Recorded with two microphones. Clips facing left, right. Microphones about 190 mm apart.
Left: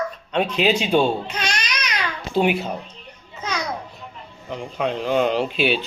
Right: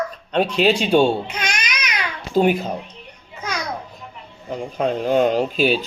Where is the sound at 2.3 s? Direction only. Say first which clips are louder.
Right 3 dB; 45° right (ahead or behind).